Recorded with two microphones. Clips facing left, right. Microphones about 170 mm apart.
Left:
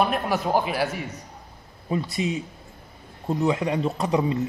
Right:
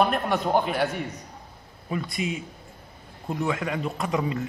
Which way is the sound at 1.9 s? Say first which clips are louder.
Left 3 dB; 30° left (ahead or behind).